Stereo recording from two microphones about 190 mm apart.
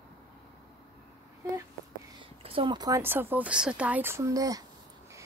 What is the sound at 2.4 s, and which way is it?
Speech, 30° right (ahead or behind).